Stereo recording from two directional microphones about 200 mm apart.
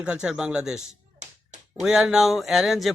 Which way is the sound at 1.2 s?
35° right (ahead or behind).